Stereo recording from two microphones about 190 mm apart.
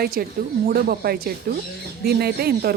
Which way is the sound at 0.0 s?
50° right (ahead or behind).